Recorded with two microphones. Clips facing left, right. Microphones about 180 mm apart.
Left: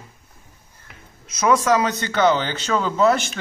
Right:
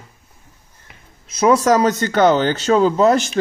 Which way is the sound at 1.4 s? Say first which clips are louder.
Right 4 dB; 40° right (ahead or behind).